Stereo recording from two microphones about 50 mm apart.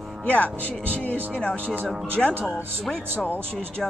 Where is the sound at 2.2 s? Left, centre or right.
Centre.